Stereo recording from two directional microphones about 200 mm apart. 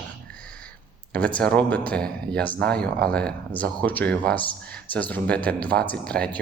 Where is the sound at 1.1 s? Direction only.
5° left (ahead or behind).